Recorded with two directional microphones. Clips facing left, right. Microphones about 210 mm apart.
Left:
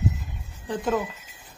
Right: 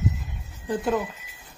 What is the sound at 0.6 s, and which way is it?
Speech, 5° right (ahead or behind).